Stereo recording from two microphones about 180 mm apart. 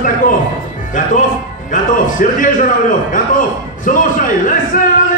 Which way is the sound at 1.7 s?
45° left (ahead or behind).